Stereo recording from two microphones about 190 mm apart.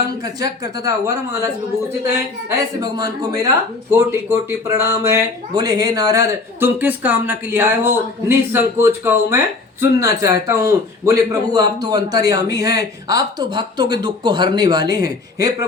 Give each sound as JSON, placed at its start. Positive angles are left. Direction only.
{"t": 0.2, "sound": "a man's voice", "side_deg": -20}
{"t": 2.5, "sound": "a man's voice", "side_deg": -20}